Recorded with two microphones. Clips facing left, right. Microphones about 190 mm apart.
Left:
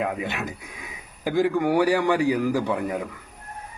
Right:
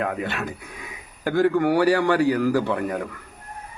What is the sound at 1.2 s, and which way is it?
Speech, 10° left (ahead or behind).